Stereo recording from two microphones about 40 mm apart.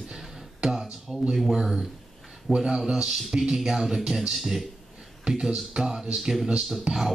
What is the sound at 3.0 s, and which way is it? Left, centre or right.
Speech, centre.